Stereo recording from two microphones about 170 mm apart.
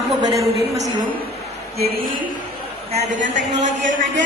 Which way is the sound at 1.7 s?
65° right (ahead or behind).